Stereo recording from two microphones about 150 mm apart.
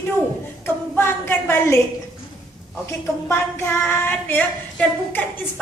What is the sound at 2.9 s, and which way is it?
A woman's voice, 15° left (ahead or behind).